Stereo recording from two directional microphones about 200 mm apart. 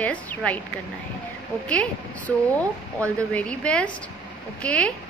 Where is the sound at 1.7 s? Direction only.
5° left (ahead or behind).